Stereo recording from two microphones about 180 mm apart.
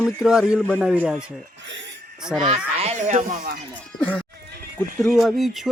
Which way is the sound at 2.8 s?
40° right (ahead or behind).